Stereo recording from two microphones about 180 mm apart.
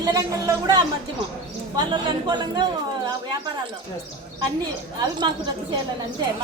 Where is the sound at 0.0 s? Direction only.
20° right (ahead or behind).